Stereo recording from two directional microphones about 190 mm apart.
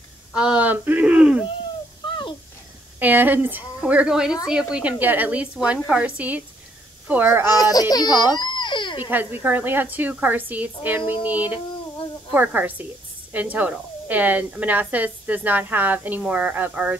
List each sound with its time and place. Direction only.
0.3 s speech: 5° right (ahead or behind)
2.0 s a sound: 25° left (ahead or behind)
3.0 s speech: 10° right (ahead or behind)
8.2 s dog: 25° left (ahead or behind)
9.1 s speech: 10° right (ahead or behind)